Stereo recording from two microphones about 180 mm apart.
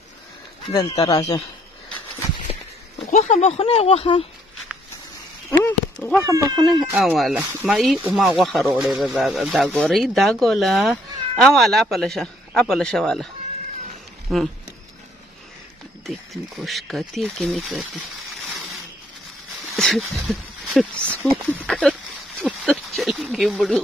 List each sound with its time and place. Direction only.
0.7 s speech: 20° left (ahead or behind)
3.1 s speech: 40° left (ahead or behind)
5.6 s speech: 10° left (ahead or behind)
6.2 s speech: 15° right (ahead or behind)
6.9 s speech: 5° right (ahead or behind)
14.3 s speech: centre (ahead or behind)
16.5 s speech: centre (ahead or behind)
19.7 s a sound: centre (ahead or behind)
20.2 s speech: centre (ahead or behind)